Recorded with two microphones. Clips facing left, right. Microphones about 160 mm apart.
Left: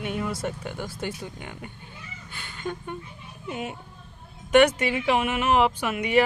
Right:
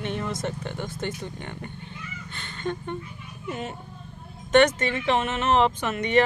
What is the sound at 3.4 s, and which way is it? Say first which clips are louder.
Speech: even; 10° left (ahead or behind).